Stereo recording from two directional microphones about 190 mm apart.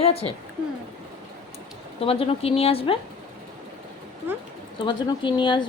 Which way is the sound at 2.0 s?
30° left (ahead or behind).